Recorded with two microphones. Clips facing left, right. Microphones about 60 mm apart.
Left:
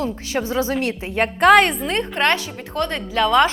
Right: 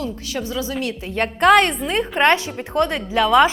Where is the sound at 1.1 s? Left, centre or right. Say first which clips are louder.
Left 1 dB; centre.